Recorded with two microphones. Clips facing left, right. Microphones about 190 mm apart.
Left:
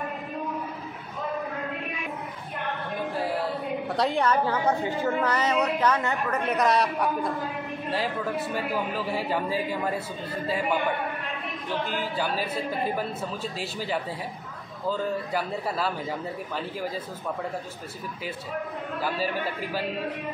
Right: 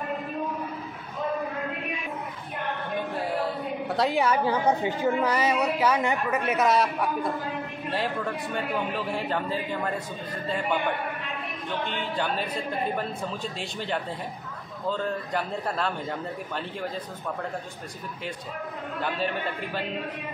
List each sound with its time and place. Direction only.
3.9 s a woman's voice: 5° right (ahead or behind)
11.8 s a man's voice: 5° left (ahead or behind)
18.9 s a man's voice: 5° left (ahead or behind)